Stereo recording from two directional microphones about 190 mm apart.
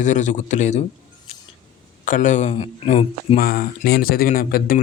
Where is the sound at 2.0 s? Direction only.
40° left (ahead or behind).